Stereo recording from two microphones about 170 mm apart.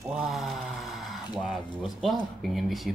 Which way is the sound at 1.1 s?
Centre (ahead or behind).